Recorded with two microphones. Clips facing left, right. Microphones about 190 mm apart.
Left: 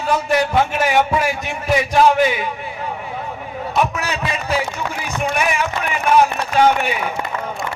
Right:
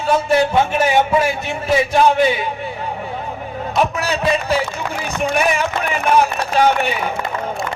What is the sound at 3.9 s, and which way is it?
Speech, 30° right (ahead or behind).